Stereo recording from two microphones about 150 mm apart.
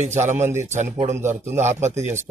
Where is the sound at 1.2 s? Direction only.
15° right (ahead or behind).